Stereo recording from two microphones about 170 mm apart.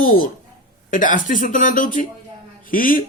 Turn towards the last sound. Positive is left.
turn(degrees=55)  # may be behind; listen again after turning